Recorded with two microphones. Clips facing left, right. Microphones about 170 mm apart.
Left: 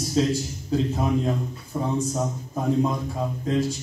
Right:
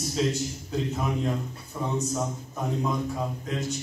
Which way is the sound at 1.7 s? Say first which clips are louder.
Left 5 dB; 15° left (ahead or behind).